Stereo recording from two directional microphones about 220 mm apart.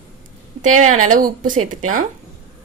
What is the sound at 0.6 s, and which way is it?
Speech, 35° right (ahead or behind).